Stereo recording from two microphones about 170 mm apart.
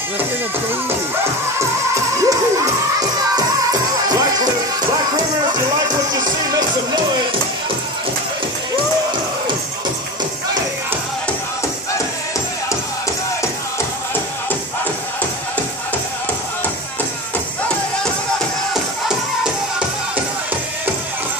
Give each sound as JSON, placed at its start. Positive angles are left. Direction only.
{"t": 2.2, "sound": "music", "side_deg": -20}
{"t": 18.7, "sound": "music", "side_deg": -5}